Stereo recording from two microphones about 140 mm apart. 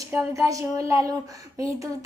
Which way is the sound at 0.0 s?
20° right (ahead or behind).